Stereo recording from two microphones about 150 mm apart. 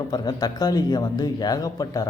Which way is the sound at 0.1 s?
25° left (ahead or behind).